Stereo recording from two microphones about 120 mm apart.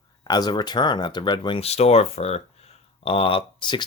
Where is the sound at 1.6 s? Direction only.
60° left (ahead or behind).